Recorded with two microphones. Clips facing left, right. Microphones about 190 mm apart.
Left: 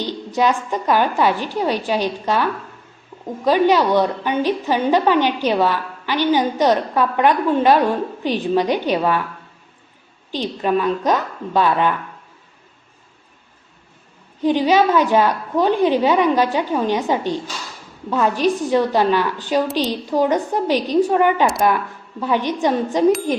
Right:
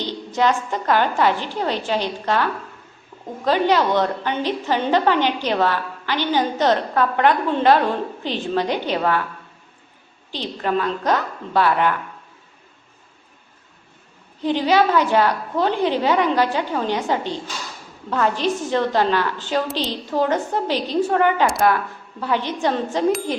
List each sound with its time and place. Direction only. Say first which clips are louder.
0.0 s a woman's voice: left 1 dB; 15° left (ahead or behind)
10.3 s a woman's voice: left 3 dB; 15° left (ahead or behind)
14.4 s a woman's voice: left 2 dB; 15° left (ahead or behind)